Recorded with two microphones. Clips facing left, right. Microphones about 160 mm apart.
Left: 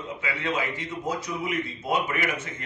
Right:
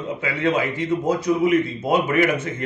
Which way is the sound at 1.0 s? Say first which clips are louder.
Right 10 dB; 50° right (ahead or behind).